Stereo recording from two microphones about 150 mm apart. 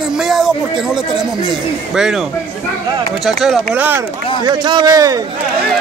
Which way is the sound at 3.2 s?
Centre (ahead or behind).